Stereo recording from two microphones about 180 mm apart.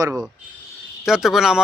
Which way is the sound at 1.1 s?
Centre (ahead or behind).